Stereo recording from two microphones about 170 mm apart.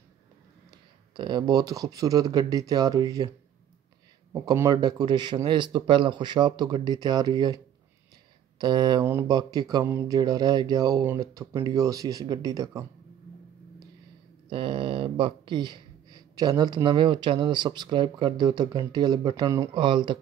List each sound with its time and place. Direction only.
0.7 s speech: 25° right (ahead or behind)
4.3 s speech: 20° right (ahead or behind)
14.5 s speech: 30° right (ahead or behind)